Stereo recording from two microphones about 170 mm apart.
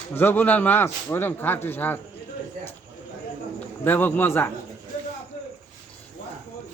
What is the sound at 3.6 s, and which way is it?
Speech, 10° left (ahead or behind).